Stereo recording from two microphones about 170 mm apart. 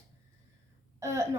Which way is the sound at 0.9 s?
15° right (ahead or behind).